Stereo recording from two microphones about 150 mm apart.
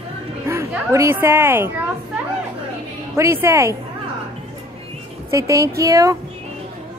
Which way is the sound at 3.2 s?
20° right (ahead or behind).